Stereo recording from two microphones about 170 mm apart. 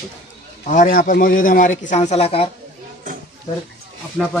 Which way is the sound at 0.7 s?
50° left (ahead or behind).